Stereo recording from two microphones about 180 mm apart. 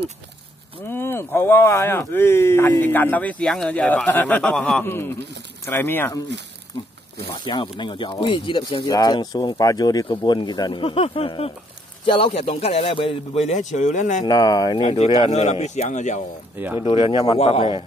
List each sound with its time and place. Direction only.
0.8 s speech: 15° left (ahead or behind)
7.4 s a man's voice: 25° left (ahead or behind); by 14.2 s 45° left (ahead or behind)
14.2 s speech: 20° left (ahead or behind)
15.3 s a man's voice: 40° left (ahead or behind)
16.5 s speech: 10° right (ahead or behind)
16.8 s a man's voice: 25° left (ahead or behind)